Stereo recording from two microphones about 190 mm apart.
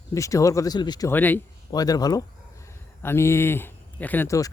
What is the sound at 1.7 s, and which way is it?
Speech, 20° left (ahead or behind).